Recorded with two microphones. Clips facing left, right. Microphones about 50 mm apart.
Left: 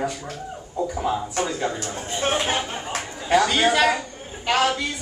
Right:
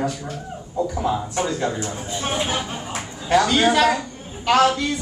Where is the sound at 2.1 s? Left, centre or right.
Left.